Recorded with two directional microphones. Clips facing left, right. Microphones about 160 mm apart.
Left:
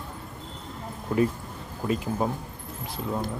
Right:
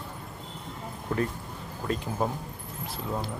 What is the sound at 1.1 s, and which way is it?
A man's voice, 10° left (ahead or behind).